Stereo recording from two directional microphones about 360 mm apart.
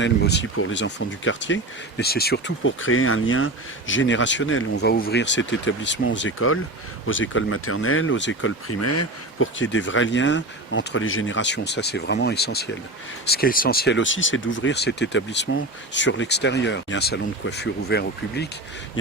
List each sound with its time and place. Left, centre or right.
0.0 s speech: left